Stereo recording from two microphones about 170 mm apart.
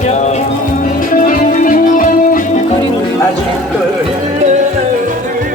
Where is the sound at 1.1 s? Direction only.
50° left (ahead or behind).